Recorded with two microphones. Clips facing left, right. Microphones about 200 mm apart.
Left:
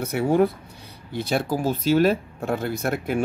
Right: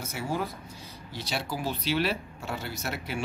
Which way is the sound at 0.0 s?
60° left (ahead or behind).